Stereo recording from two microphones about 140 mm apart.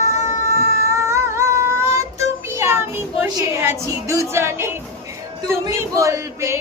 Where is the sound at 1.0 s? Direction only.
20° right (ahead or behind).